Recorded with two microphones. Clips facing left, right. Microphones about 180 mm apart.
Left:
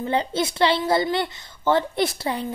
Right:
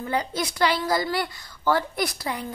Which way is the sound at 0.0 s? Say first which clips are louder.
Left 4 dB; 25° left (ahead or behind).